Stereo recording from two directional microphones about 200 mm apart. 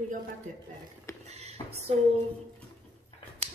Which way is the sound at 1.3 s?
30° right (ahead or behind).